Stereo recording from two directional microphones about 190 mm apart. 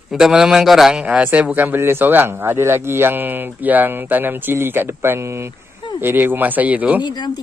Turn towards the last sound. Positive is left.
turn(degrees=20)  # may be behind; listen again after turning